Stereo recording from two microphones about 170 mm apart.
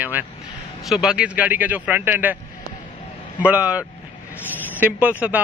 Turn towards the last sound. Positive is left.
turn(degrees=-10)  # may be behind; listen again after turning